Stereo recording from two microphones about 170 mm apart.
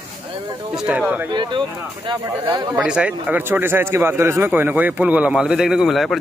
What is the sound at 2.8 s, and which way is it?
A man's voice, 5° right (ahead or behind).